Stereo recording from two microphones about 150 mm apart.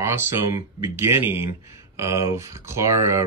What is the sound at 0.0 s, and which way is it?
Speech, 15° right (ahead or behind).